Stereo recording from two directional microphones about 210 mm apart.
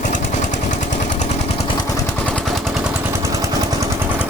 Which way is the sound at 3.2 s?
15° right (ahead or behind).